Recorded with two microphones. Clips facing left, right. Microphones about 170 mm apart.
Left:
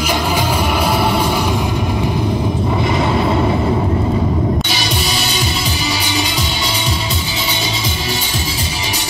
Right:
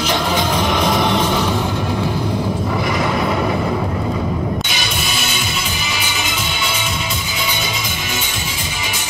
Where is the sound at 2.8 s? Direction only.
25° left (ahead or behind).